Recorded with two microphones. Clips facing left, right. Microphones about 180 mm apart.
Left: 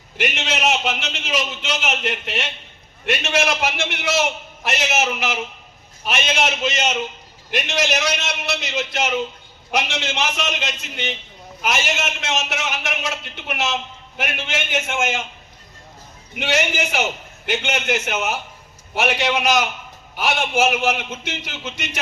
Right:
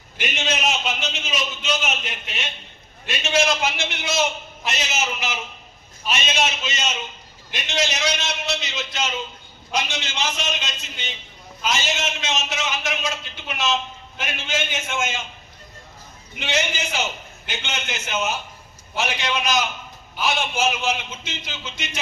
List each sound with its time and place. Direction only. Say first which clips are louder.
0.2 s a man's voice: left 3 dB; 70° left (ahead or behind)
16.3 s a man's voice: left 4 dB; 65° left (ahead or behind)